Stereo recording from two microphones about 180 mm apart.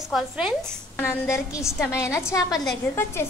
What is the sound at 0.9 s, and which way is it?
A woman's voice, 15° left (ahead or behind).